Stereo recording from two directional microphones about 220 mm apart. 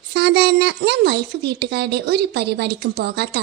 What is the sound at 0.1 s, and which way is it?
A woman's voice, 50° right (ahead or behind).